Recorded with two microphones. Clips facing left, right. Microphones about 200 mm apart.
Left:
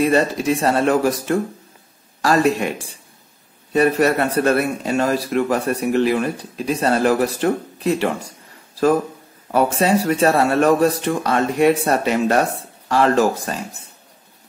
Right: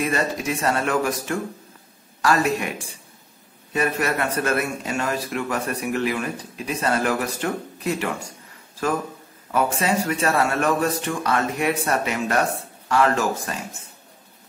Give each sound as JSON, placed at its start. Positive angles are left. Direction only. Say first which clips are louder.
{"t": 0.0, "sound": "a man's voice", "louder": "left 7 dB", "side_deg": 35}
{"t": 9.5, "sound": "a man's voice", "louder": "left 5 dB", "side_deg": 35}